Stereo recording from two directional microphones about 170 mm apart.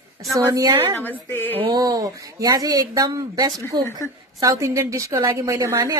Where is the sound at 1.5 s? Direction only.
30° right (ahead or behind).